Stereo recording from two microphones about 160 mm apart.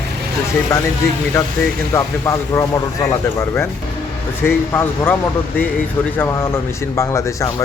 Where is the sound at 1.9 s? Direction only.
20° left (ahead or behind).